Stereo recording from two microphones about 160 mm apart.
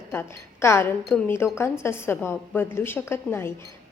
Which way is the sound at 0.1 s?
15° left (ahead or behind).